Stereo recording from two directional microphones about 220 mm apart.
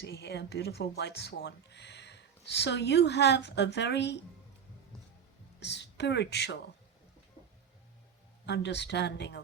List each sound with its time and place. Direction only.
0.0 s speech: 50° left (ahead or behind)
5.5 s a woman's voice: 50° left (ahead or behind)
8.4 s speech: 50° left (ahead or behind)